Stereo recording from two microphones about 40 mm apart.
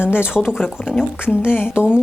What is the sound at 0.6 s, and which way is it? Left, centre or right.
Speech, left.